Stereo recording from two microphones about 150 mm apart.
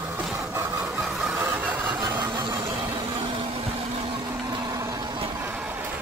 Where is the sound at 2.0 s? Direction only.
25° right (ahead or behind).